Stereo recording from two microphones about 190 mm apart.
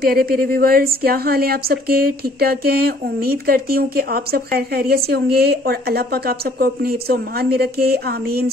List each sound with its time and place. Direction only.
0.0 s a woman's voice: 50° right (ahead or behind)